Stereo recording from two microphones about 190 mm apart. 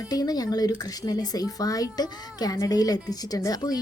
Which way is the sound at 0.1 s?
20° left (ahead or behind).